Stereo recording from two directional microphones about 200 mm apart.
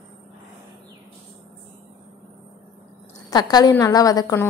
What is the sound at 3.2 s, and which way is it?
A woman's voice, 20° left (ahead or behind).